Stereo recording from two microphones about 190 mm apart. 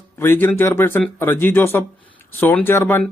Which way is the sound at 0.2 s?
10° left (ahead or behind).